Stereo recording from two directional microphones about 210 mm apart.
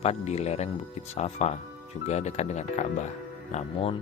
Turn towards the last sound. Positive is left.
turn(degrees=30)  # may be behind; listen again after turning